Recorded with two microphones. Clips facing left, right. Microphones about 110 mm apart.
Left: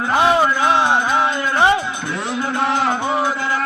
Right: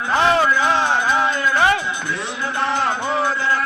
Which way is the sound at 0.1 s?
15° left (ahead or behind).